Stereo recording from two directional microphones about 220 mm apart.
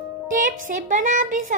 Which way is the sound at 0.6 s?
35° right (ahead or behind).